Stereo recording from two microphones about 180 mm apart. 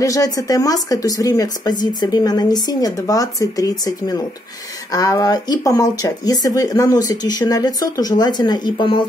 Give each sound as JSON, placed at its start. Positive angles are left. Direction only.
{"t": 0.0, "sound": "a woman's voice", "side_deg": 20}